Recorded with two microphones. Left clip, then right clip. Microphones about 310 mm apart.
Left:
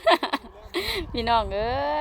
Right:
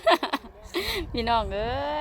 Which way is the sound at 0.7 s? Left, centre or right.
Centre.